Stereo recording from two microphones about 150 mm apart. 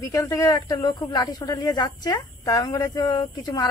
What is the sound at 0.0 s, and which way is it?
Speech, 20° left (ahead or behind).